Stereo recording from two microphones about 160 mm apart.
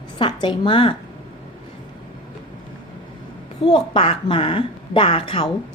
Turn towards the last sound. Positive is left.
turn(degrees=35)  # may be behind; listen again after turning